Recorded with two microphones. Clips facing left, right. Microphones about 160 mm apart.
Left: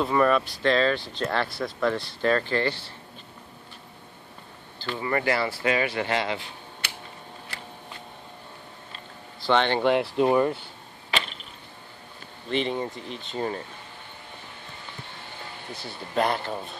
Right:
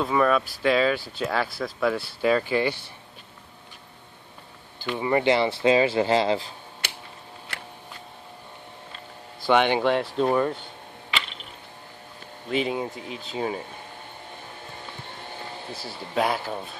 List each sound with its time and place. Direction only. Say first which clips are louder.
0.0 s speech: even; centre (ahead or behind)
4.7 s speech: right 4 dB; 15° right (ahead or behind)
9.4 s speech: right 2 dB; 10° right (ahead or behind)
9.8 s speech: left 1 dB; 5° left (ahead or behind)
12.4 s speech: right 1 dB; 5° right (ahead or behind)
15.7 s speech: even; 5° right (ahead or behind)